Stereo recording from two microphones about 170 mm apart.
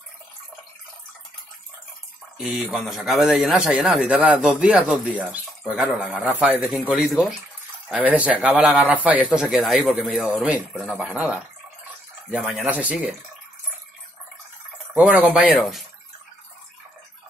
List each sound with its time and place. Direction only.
2.3 s speech: centre (ahead or behind)
8.2 s speech: 5° right (ahead or behind)
15.0 s speech: 10° right (ahead or behind)